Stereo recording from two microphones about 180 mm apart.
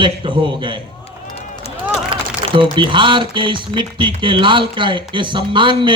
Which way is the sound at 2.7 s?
25° right (ahead or behind).